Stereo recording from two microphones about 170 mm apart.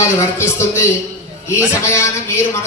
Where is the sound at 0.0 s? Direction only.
15° left (ahead or behind).